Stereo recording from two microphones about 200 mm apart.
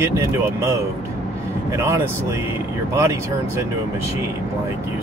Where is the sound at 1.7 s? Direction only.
15° right (ahead or behind).